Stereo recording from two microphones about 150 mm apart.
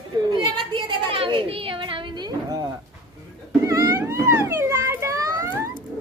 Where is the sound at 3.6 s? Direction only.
20° right (ahead or behind).